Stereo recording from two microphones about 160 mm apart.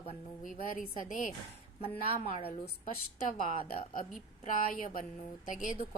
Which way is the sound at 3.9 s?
55° left (ahead or behind).